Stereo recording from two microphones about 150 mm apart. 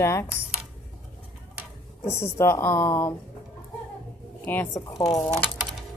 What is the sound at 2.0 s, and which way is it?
Speech, 20° left (ahead or behind).